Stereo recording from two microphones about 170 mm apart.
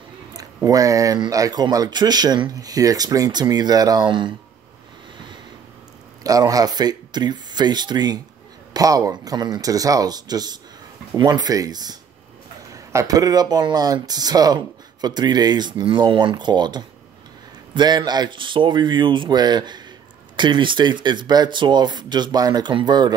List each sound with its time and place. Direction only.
0.7 s speech: 20° right (ahead or behind)
6.2 s speech: 20° right (ahead or behind)